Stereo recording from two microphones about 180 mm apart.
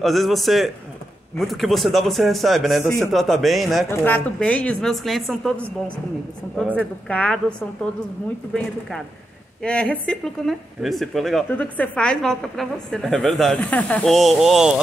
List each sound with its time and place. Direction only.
0.0 s speech: centre (ahead or behind)
3.9 s speech: 10° left (ahead or behind)
6.8 s a woman's voice: 5° left (ahead or behind)
9.6 s speech: 5° left (ahead or behind)